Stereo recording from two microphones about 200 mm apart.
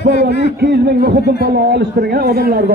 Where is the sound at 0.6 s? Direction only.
50° right (ahead or behind).